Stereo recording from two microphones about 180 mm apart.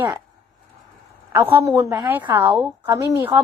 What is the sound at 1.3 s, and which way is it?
A woman's voice, 10° right (ahead or behind).